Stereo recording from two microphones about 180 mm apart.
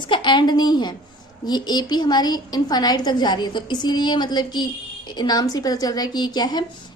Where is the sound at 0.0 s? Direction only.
25° left (ahead or behind).